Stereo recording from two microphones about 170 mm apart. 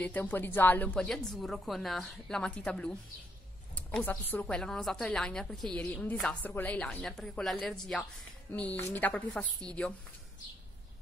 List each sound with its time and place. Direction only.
0.0 s a woman's voice: 10° left (ahead or behind)